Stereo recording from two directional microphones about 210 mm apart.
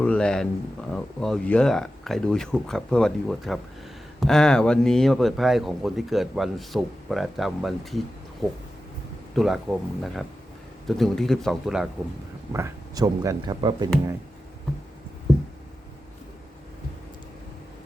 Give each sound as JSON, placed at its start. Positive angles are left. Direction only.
{"t": 0.0, "sound": "a man's voice", "side_deg": 5}
{"t": 9.3, "sound": "a man's voice", "side_deg": 0}
{"t": 12.5, "sound": "speech", "side_deg": -15}